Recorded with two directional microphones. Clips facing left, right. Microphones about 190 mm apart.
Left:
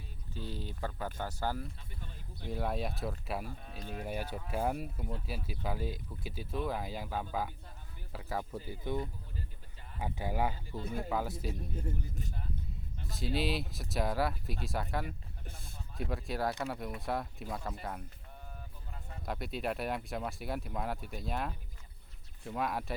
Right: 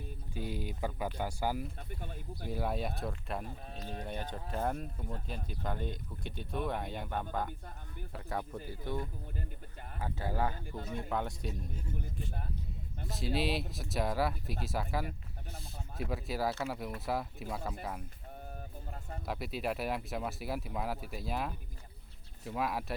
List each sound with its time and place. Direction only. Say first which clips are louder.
0.3 s speech: right 3 dB; 15° right (ahead or behind)
1.9 s speech: right 6 dB; 55° right (ahead or behind)
2.5 s speech: even; centre (ahead or behind)
3.7 s speech: even; 35° right (ahead or behind)
4.0 s speech: left 4 dB; 10° left (ahead or behind)
8.7 s speech: left 2 dB; 15° left (ahead or behind)
10.9 s speech: left 1 dB; 5° left (ahead or behind)
11.8 s a man's voice: left 2 dB; 45° left (ahead or behind)
13.1 s speech: even; centre (ahead or behind)
19.2 s speech: even; centre (ahead or behind)